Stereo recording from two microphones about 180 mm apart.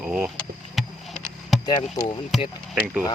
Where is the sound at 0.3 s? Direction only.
Centre (ahead or behind).